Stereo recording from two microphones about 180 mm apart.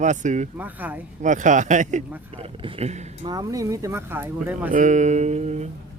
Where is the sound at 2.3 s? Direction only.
30° right (ahead or behind).